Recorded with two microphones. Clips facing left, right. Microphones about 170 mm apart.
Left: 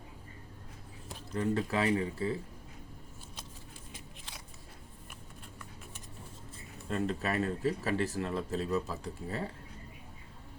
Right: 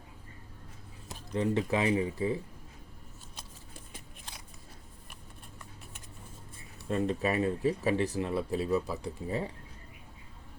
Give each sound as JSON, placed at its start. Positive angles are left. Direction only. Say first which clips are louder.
{"t": 1.3, "sound": "speech", "louder": "right 3 dB", "side_deg": -20}
{"t": 6.9, "sound": "speech", "louder": "right 3 dB", "side_deg": -15}